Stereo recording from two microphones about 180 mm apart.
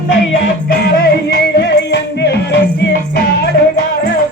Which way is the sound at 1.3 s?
65° left (ahead or behind).